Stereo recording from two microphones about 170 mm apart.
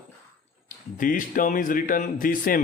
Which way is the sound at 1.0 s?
55° left (ahead or behind).